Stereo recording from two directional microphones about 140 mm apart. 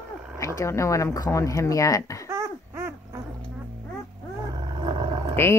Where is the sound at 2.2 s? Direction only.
20° right (ahead or behind).